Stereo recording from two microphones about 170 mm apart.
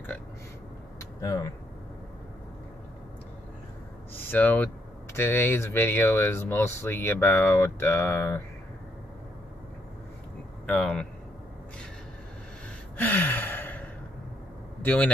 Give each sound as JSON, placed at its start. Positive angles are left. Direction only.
{"t": 1.2, "sound": "speech", "side_deg": 20}
{"t": 4.3, "sound": "speech", "side_deg": 10}
{"t": 10.7, "sound": "speech", "side_deg": 5}
{"t": 12.9, "sound": "sigh", "side_deg": 10}
{"t": 14.8, "sound": "speech", "side_deg": 10}